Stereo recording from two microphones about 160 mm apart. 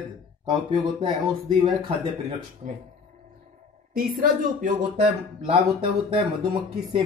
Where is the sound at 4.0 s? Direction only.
60° right (ahead or behind).